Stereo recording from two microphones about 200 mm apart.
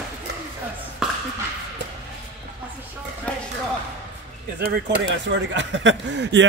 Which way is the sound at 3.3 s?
5° left (ahead or behind).